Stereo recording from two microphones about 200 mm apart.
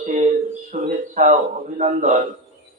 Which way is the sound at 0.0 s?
40° right (ahead or behind).